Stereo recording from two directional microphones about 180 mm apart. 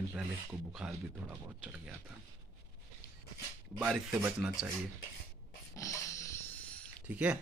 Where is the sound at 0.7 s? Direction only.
5° right (ahead or behind).